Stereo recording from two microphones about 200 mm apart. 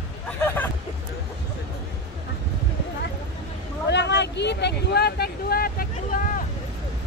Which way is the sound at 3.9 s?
60° left (ahead or behind).